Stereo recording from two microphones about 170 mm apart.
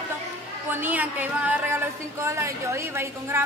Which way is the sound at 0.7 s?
10° right (ahead or behind).